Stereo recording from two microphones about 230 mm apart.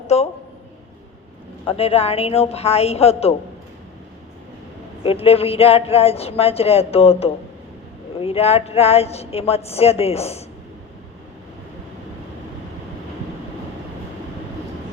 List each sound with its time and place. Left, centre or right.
0.1 s a woman's voice: left
1.6 s a woman's voice: left
5.0 s a woman's voice: left